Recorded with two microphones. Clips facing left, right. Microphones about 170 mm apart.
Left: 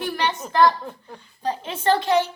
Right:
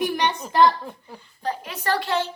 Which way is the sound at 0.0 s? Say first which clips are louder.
Right 2 dB; 15° right (ahead or behind).